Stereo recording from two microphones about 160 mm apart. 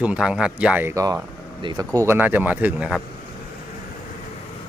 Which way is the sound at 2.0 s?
10° right (ahead or behind).